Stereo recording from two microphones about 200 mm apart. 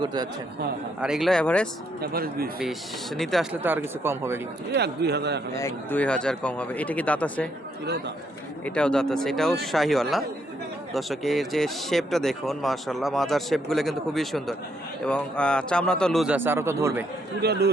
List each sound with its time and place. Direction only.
0.0 s speech: 20° right (ahead or behind)
1.0 s speech: centre (ahead or behind)
2.0 s a man's voice: 50° right (ahead or behind)
3.2 s speech: centre (ahead or behind)
3.6 s speech: 10° right (ahead or behind)
4.7 s a man's voice: 55° right (ahead or behind)
5.5 s speech: 10° left (ahead or behind)
8.6 s speech: 5° left (ahead or behind); by 17.1 s 10° right (ahead or behind)
17.4 s a man's voice: 55° right (ahead or behind)